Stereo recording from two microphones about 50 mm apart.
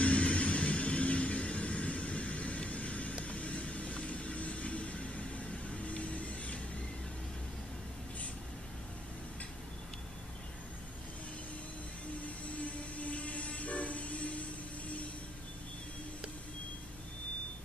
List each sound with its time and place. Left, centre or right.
0.0 s vehicle: left
12.4 s music: left